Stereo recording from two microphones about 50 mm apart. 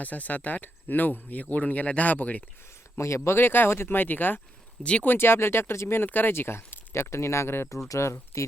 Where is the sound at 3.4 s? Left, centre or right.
Left.